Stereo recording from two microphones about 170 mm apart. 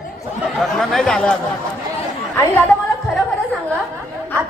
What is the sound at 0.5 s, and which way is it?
Speech, centre (ahead or behind).